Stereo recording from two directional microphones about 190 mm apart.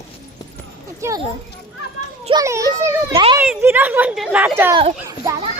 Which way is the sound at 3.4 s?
10° right (ahead or behind).